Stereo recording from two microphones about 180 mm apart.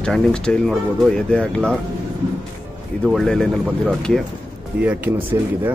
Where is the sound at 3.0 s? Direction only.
Centre (ahead or behind).